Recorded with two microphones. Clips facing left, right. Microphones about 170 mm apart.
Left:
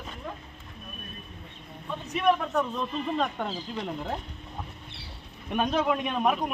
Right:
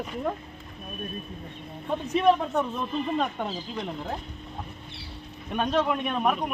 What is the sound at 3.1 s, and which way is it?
Speech, 10° right (ahead or behind).